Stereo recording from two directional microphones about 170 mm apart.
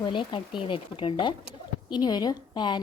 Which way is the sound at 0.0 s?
25° left (ahead or behind).